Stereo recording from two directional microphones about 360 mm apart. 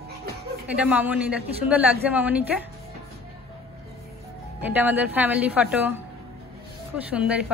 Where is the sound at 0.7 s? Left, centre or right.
Centre.